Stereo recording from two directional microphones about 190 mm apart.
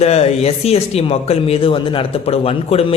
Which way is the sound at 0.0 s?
35° left (ahead or behind).